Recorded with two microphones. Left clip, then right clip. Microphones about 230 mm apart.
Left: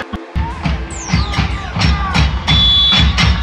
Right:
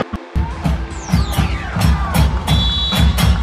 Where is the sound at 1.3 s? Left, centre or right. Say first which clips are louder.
Left 2 dB; right.